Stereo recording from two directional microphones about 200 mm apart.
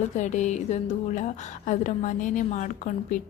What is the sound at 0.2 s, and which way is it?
A woman's voice, 35° left (ahead or behind).